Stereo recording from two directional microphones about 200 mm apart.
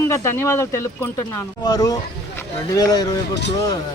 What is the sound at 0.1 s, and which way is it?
Speech, 15° left (ahead or behind).